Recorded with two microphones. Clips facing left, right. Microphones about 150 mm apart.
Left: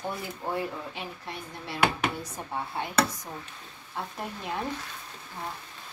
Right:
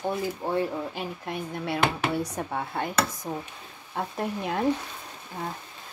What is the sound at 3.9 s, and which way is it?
Speech, 60° right (ahead or behind).